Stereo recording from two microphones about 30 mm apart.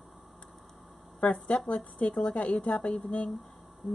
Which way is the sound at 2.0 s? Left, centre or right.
Left.